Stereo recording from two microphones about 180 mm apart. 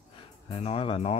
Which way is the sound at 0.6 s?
30° left (ahead or behind).